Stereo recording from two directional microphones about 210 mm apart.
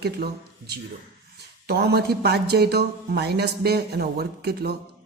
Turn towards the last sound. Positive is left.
turn(degrees=-50)  # may be behind; listen again after turning